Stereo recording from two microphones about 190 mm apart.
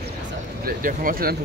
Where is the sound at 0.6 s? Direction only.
50° right (ahead or behind).